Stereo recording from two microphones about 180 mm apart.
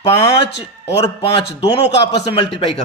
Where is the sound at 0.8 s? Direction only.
35° left (ahead or behind).